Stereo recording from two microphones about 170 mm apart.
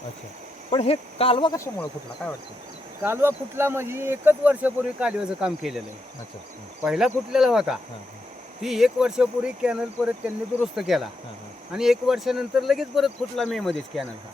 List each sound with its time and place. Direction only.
0.7 s speech: 35° left (ahead or behind)
3.0 s speech: 15° right (ahead or behind)
6.8 s speech: 5° right (ahead or behind)